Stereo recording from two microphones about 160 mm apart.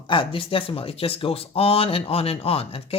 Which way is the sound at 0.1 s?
35° left (ahead or behind).